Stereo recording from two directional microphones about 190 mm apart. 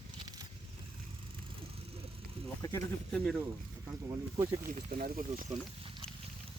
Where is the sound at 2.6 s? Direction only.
20° left (ahead or behind).